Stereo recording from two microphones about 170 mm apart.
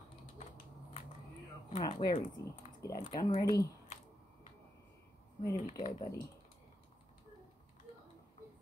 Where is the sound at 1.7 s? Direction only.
30° left (ahead or behind).